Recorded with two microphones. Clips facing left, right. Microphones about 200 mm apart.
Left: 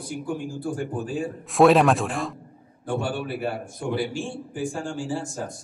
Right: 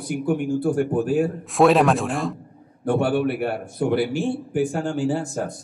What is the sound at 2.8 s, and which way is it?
A man's voice, 65° right (ahead or behind).